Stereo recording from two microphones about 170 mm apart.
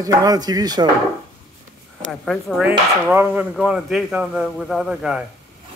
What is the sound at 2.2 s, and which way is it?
Speech, centre (ahead or behind).